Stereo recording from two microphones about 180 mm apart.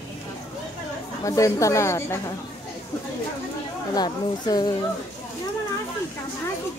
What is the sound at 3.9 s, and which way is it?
Speech, 20° left (ahead or behind).